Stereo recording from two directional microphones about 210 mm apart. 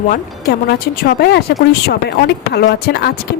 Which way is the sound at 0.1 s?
45° left (ahead or behind).